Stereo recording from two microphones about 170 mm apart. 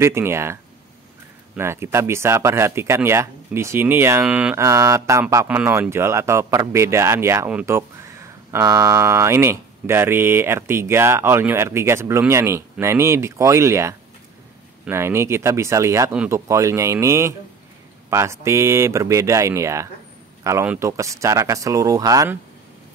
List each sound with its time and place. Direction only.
0.0 s speech: 15° right (ahead or behind)
16.3 s speech: 20° right (ahead or behind)